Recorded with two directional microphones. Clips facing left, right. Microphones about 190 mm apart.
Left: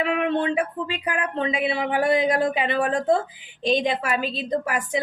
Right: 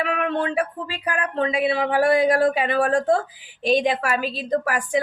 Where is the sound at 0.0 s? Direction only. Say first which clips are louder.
Left 1 dB; 20° left (ahead or behind).